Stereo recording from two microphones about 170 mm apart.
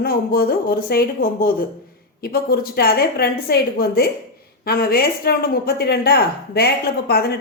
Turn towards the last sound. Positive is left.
turn(degrees=65)  # may be behind; listen again after turning